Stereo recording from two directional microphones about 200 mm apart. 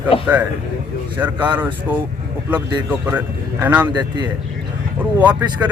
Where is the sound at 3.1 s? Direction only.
10° right (ahead or behind).